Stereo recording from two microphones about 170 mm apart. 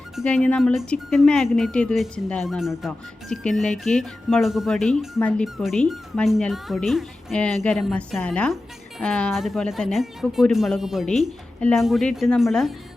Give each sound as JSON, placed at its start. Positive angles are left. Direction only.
{"t": 0.2, "sound": "speech", "side_deg": 5}